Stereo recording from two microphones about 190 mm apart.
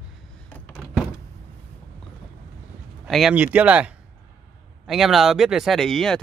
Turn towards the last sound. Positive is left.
turn(degrees=0)  # may be behind; listen again after turning